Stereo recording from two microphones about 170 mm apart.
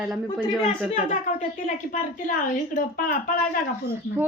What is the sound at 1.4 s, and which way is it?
A woman's voice, 50° left (ahead or behind).